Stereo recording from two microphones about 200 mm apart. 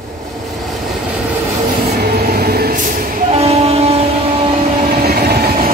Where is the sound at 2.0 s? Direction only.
50° right (ahead or behind).